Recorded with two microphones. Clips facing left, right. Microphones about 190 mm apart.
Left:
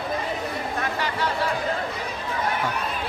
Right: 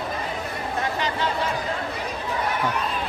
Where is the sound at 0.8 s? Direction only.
20° right (ahead or behind).